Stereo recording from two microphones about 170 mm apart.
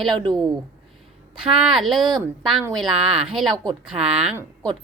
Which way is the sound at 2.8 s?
Centre (ahead or behind).